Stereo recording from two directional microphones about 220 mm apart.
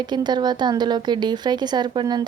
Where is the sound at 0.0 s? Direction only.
20° right (ahead or behind).